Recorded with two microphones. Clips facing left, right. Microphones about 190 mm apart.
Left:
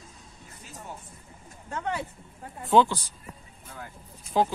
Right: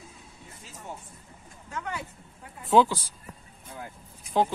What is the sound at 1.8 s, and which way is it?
Speech, 35° left (ahead or behind).